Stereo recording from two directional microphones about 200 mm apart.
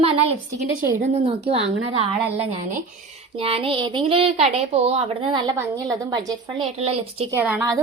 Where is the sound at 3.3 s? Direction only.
30° right (ahead or behind).